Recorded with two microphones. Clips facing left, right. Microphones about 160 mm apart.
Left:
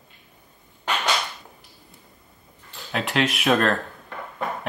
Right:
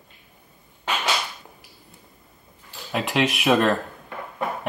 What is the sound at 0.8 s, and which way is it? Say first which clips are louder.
Whip: left 1 dB; 5° right (ahead or behind).